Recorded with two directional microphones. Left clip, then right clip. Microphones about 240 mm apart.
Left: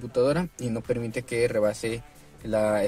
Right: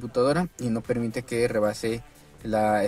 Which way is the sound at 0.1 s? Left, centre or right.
Centre.